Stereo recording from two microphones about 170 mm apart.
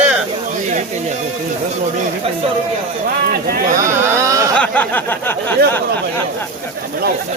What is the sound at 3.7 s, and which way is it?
Speech, 15° right (ahead or behind).